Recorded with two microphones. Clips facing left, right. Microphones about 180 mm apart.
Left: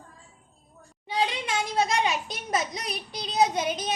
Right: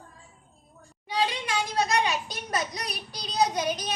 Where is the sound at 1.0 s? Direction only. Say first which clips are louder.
Even; 25° left (ahead or behind).